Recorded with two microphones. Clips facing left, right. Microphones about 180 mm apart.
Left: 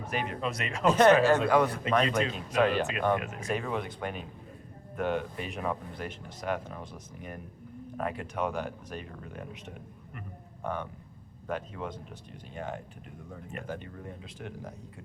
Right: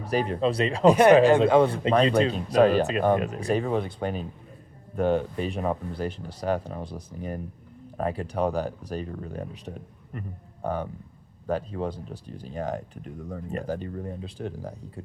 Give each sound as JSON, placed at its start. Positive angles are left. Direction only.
{"t": 0.0, "sound": "speech", "side_deg": -35}
{"t": 0.9, "sound": "speech", "side_deg": -15}
{"t": 1.4, "sound": "speech", "side_deg": -25}